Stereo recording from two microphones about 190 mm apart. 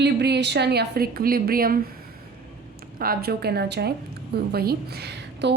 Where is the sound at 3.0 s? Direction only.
55° right (ahead or behind).